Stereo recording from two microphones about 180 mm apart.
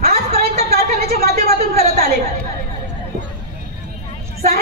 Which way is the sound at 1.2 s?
60° right (ahead or behind).